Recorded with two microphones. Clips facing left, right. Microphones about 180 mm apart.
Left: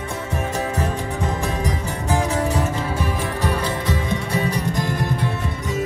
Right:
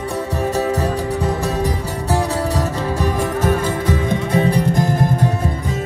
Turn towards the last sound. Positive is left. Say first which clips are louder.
# right 6 dB
turn(degrees=-45)  # may be behind; listen again after turning